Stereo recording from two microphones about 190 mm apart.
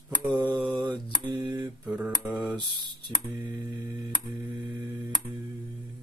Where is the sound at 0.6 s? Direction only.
25° right (ahead or behind).